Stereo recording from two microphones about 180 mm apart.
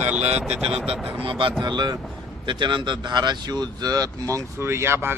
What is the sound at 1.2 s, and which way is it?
Speech, 30° right (ahead or behind).